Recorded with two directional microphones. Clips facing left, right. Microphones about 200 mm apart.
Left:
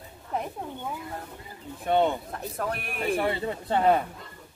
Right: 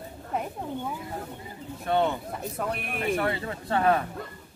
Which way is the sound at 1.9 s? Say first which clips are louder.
Left 2 dB; 15° left (ahead or behind).